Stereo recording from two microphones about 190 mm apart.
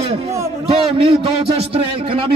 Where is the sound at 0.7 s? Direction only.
30° right (ahead or behind).